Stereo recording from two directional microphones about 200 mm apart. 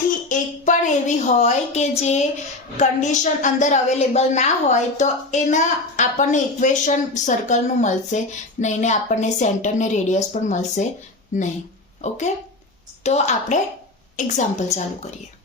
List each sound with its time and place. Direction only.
0.3 s a woman's voice: 40° left (ahead or behind)